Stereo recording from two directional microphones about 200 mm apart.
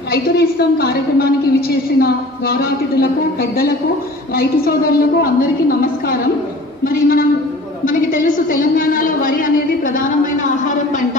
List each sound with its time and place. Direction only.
0.1 s a woman's voice: 50° left (ahead or behind)